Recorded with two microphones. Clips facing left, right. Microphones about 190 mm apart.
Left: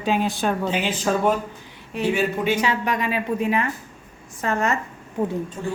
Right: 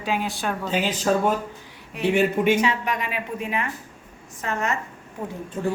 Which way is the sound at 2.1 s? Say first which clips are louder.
Right 5 dB; 55° right (ahead or behind).